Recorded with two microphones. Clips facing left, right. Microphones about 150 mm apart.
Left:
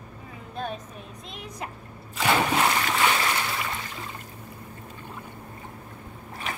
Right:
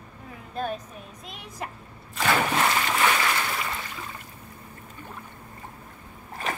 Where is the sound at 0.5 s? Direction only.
Centre (ahead or behind).